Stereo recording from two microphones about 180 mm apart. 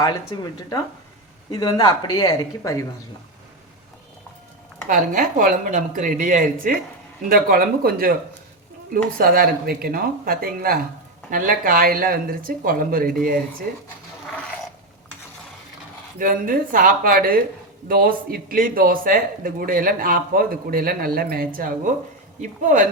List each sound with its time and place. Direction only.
1.5 s speech: 25° left (ahead or behind)
4.9 s speech: 45° right (ahead or behind)
9.1 s speech: 55° right (ahead or behind)
16.1 s speech: 50° right (ahead or behind)
22.4 s speech: 45° right (ahead or behind)